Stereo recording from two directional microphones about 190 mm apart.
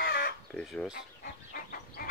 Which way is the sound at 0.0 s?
55° left (ahead or behind).